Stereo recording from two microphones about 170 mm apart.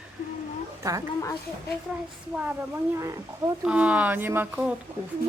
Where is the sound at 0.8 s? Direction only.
20° right (ahead or behind).